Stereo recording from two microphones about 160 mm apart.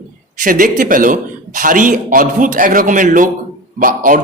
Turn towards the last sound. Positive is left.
turn(degrees=-60)  # may be behind; listen again after turning